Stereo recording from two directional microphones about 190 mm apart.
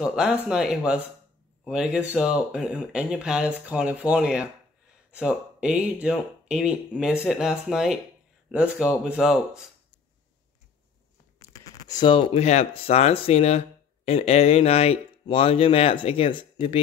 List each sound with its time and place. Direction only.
0.0 s speech: 5° right (ahead or behind)
11.5 s speech: 20° left (ahead or behind)